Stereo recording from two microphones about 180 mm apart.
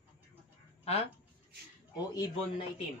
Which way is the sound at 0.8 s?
35° left (ahead or behind).